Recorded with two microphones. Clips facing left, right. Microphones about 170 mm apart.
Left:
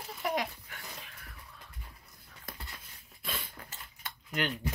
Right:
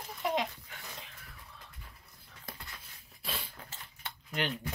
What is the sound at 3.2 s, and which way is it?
Cutlery, 35° right (ahead or behind).